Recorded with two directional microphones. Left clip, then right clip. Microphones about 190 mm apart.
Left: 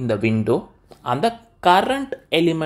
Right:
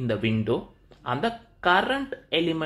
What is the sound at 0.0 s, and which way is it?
Speech, 25° left (ahead or behind).